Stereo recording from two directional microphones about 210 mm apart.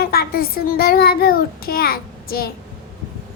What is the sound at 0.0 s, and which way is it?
Child singing, 45° left (ahead or behind).